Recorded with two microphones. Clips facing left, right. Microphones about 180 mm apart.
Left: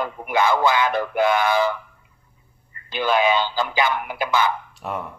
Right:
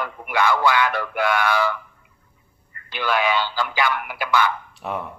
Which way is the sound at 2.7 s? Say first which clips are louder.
Left 3 dB; 20° left (ahead or behind).